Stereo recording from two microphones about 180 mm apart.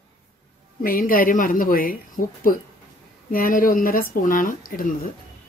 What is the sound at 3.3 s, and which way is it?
Speech, 50° left (ahead or behind).